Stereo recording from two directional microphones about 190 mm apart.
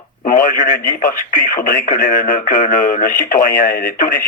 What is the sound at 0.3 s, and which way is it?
Speech, 50° left (ahead or behind).